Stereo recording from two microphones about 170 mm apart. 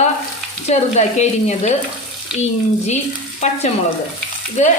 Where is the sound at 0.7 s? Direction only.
40° left (ahead or behind).